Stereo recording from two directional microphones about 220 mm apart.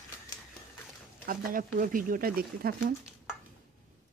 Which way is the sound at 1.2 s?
40° right (ahead or behind).